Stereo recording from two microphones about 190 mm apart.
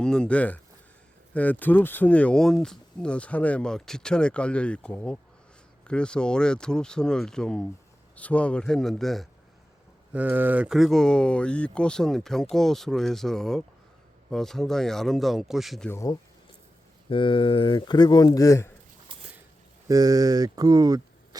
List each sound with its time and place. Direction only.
0.0 s speech: 5° left (ahead or behind)
15.9 s speech: 15° left (ahead or behind)
17.1 s speech: 25° left (ahead or behind)
19.9 s speech: 20° right (ahead or behind)